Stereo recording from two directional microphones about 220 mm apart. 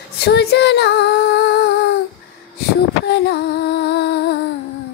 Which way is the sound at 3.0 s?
50° left (ahead or behind).